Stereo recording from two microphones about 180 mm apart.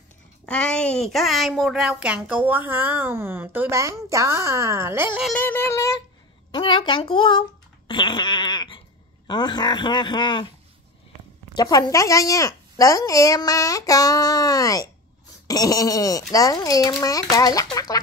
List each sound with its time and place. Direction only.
0.5 s speech: 5° left (ahead or behind); by 5.2 s 10° right (ahead or behind)
5.4 s a woman's voice: 10° left (ahead or behind); by 7.4 s 25° left (ahead or behind)
7.9 s fart: 25° left (ahead or behind)
9.3 s a woman's voice: 25° left (ahead or behind)
11.5 s a woman's voice: 20° left (ahead or behind)